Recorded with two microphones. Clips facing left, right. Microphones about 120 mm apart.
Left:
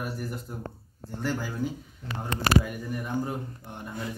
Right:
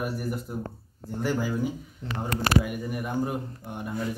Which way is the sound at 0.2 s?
5° right (ahead or behind).